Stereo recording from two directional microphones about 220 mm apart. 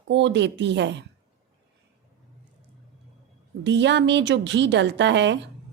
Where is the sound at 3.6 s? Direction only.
55° right (ahead or behind).